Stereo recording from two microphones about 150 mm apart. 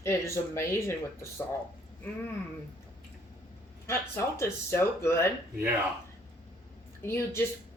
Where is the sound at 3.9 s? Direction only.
15° left (ahead or behind).